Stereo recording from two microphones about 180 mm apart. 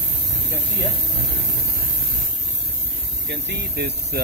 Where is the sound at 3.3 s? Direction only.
70° right (ahead or behind).